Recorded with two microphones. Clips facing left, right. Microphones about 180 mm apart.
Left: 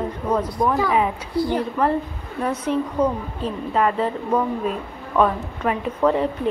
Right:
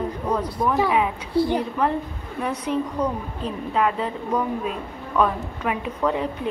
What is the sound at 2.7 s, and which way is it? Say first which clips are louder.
A woman's voice: left 3 dB; centre (ahead or behind).